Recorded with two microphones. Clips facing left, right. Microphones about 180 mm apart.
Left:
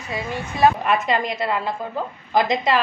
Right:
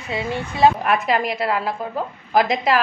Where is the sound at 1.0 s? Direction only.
5° right (ahead or behind).